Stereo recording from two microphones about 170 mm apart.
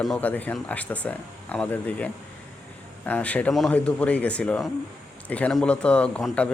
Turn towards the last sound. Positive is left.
turn(degrees=5)  # may be behind; listen again after turning